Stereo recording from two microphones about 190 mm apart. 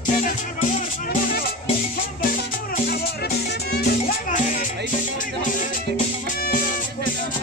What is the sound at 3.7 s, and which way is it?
Music, 60° left (ahead or behind).